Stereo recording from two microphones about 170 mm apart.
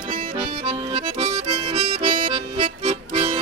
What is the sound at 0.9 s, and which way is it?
Accordion, 35° right (ahead or behind).